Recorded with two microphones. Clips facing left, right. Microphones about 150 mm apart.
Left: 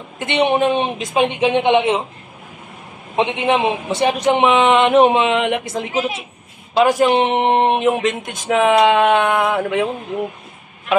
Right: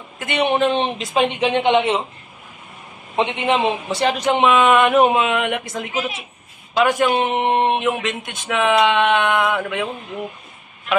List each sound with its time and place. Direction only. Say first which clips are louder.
0.2 s a man's voice: left 3 dB; 25° left (ahead or behind)
0.5 s speech: left 2 dB; 15° left (ahead or behind)
3.2 s a man's voice: left 2 dB; 15° left (ahead or behind); by 9.8 s 30° left (ahead or behind)